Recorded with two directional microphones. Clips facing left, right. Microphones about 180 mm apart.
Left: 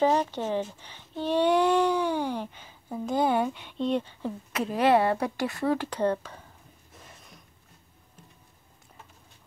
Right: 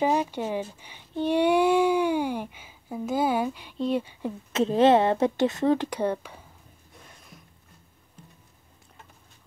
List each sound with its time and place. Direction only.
0.0 s speech: 10° right (ahead or behind)
4.5 s speech: 25° right (ahead or behind)
6.9 s a sound: centre (ahead or behind)